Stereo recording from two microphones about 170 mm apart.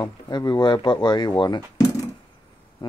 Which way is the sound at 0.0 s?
25° left (ahead or behind).